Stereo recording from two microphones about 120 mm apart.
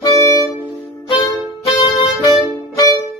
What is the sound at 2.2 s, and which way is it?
Music, 35° left (ahead or behind).